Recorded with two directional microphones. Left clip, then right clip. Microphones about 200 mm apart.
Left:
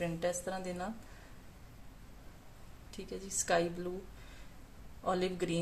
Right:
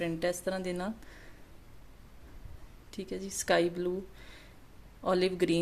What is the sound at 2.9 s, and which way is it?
Speech, 35° right (ahead or behind).